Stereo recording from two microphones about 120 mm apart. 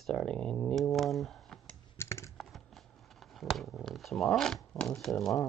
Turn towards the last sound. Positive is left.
turn(degrees=0)  # may be behind; listen again after turning